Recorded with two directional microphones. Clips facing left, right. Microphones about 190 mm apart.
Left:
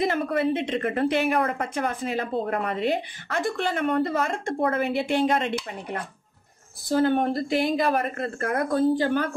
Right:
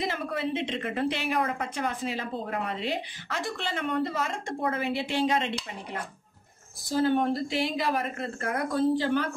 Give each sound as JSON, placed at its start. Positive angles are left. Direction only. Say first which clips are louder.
{"t": 0.0, "sound": "a woman's voice", "louder": "left 7 dB", "side_deg": 55}